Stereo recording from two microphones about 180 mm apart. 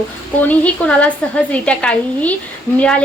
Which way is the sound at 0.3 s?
10° left (ahead or behind).